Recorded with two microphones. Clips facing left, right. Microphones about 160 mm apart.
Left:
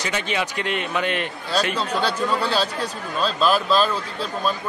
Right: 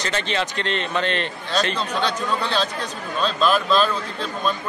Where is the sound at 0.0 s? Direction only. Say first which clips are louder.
Right 1 dB; 10° left (ahead or behind).